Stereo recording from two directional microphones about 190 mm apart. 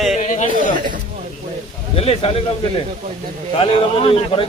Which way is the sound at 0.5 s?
45° right (ahead or behind).